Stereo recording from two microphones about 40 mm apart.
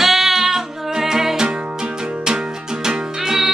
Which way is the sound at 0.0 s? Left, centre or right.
Centre.